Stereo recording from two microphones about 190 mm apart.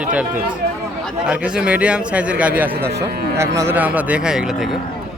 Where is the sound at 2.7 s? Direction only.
60° right (ahead or behind).